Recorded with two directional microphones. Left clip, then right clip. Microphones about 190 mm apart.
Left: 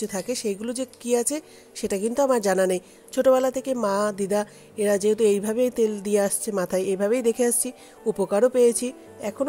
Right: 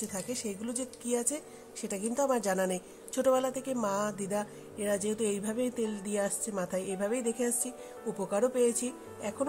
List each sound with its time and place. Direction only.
0.0 s speech: 40° left (ahead or behind)